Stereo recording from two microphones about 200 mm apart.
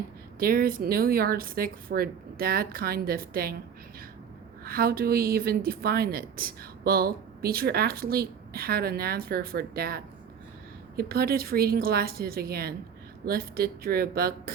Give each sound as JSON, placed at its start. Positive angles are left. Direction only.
{"t": 0.3, "sound": "a woman's voice", "side_deg": -45}
{"t": 4.6, "sound": "a woman's voice", "side_deg": -50}